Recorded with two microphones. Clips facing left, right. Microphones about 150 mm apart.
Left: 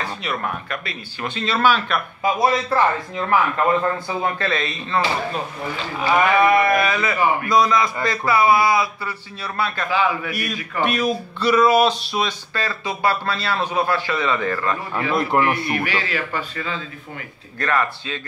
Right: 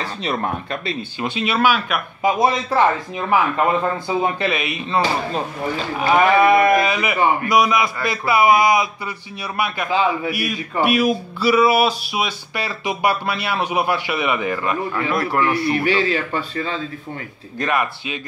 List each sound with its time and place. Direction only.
0.0 s speech: 30° right (ahead or behind)
1.3 s speech: 15° right (ahead or behind)
2.2 s speech: 20° right (ahead or behind)
6.0 s speech: 20° right (ahead or behind)
10.3 s speech: 10° right (ahead or behind)
15.0 s a man's voice: 25° left (ahead or behind)
15.7 s speech: 30° right (ahead or behind)
17.6 s speech: 15° right (ahead or behind)